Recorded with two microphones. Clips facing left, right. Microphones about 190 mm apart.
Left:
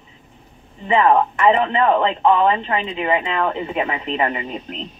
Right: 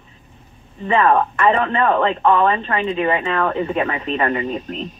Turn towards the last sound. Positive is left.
turn(degrees=15)  # may be behind; listen again after turning